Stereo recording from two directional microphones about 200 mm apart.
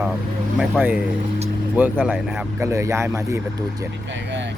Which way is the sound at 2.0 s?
Centre (ahead or behind).